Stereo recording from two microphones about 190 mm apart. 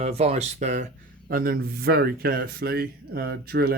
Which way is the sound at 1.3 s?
50° right (ahead or behind).